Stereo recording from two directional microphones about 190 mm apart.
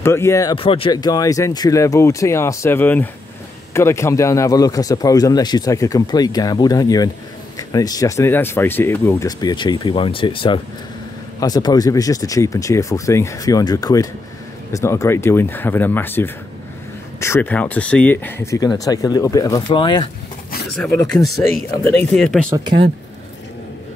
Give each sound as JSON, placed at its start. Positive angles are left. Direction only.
{"t": 0.0, "sound": "a man's voice", "side_deg": 15}
{"t": 9.4, "sound": "a man's voice", "side_deg": 20}
{"t": 20.7, "sound": "speech", "side_deg": 5}